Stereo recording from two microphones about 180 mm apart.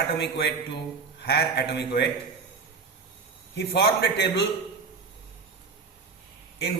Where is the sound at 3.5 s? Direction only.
70° left (ahead or behind).